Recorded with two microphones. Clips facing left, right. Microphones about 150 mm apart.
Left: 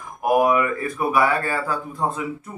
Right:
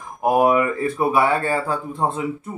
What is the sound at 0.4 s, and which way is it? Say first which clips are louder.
Speech: right 3 dB; 30° right (ahead or behind).